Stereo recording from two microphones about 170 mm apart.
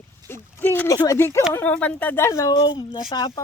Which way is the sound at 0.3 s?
15° left (ahead or behind).